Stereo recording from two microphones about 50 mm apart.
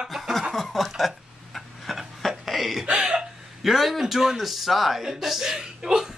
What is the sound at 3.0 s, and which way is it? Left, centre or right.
Speech, centre.